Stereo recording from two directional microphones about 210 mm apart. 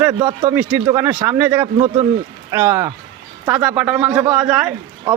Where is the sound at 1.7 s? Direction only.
30° right (ahead or behind).